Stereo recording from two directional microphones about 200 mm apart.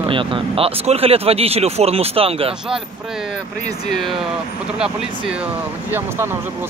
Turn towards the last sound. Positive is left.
turn(degrees=-10)  # may be behind; listen again after turning